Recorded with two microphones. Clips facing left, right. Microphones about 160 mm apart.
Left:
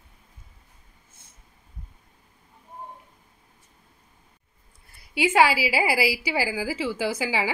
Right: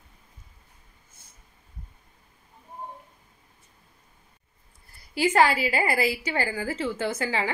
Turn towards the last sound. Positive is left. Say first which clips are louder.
# left 1 dB
turn(degrees=5)  # may be behind; listen again after turning